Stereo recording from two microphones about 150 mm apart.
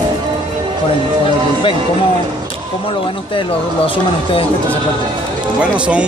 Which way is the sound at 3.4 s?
35° left (ahead or behind).